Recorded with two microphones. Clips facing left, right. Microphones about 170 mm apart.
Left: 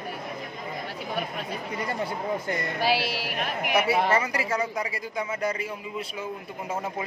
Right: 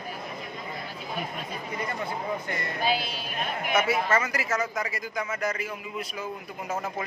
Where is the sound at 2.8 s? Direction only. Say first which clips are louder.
Left 2 dB; 75° left (ahead or behind).